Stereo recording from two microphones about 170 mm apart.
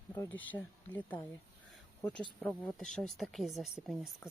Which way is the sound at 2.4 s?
10° left (ahead or behind).